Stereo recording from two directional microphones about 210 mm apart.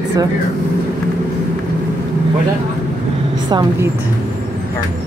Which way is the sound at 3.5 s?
20° right (ahead or behind).